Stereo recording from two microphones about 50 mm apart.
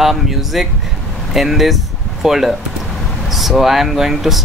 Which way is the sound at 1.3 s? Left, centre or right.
Centre.